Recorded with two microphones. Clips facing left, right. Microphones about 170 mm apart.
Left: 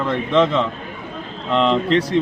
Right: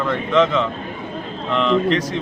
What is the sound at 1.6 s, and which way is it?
Speech, 30° left (ahead or behind).